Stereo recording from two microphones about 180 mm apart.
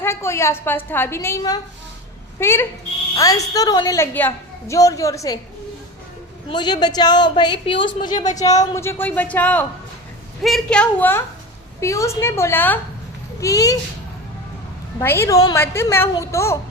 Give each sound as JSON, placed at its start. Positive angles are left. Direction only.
{"t": 0.0, "sound": "a woman's voice", "side_deg": 15}
{"t": 6.5, "sound": "a woman's voice", "side_deg": 25}
{"t": 14.9, "sound": "a woman's voice", "side_deg": 15}